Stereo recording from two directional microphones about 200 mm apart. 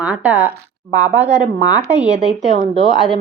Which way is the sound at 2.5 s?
35° right (ahead or behind).